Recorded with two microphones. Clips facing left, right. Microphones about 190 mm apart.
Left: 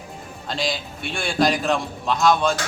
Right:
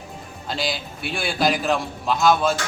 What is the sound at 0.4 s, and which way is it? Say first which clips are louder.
A man's voice: left 1 dB; centre (ahead or behind).